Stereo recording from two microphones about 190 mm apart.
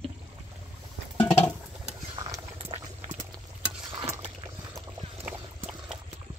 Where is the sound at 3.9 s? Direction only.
20° right (ahead or behind).